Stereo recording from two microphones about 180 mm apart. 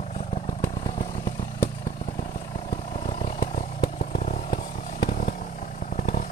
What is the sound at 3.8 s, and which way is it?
Chainsaw, 55° left (ahead or behind).